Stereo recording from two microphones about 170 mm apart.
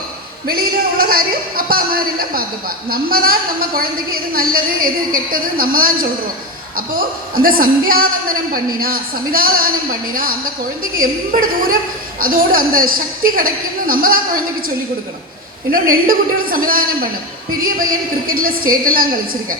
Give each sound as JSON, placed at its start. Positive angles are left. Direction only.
{"t": 0.4, "sound": "a sound", "side_deg": -60}
{"t": 3.8, "sound": "a woman's voice", "side_deg": -60}
{"t": 15.7, "sound": "a woman's voice", "side_deg": -55}